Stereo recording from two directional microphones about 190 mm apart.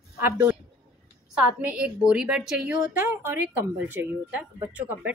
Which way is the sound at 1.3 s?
5° right (ahead or behind).